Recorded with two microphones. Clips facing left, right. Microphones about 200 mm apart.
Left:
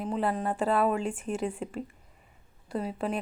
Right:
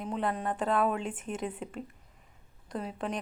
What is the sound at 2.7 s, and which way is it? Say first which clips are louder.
Speech: left 4 dB; 5° left (ahead or behind).